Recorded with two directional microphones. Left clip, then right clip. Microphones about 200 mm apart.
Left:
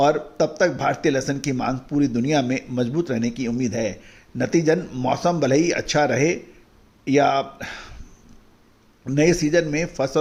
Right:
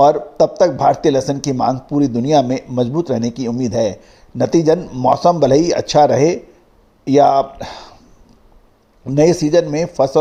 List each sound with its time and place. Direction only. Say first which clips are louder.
0.0 s speech: right 7 dB; 15° right (ahead or behind)
9.0 s speech: right 6 dB; 15° right (ahead or behind)